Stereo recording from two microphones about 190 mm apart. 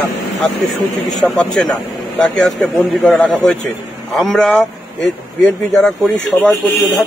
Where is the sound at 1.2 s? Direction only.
5° left (ahead or behind).